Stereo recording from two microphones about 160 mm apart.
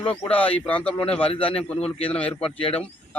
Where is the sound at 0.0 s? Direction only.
35° left (ahead or behind).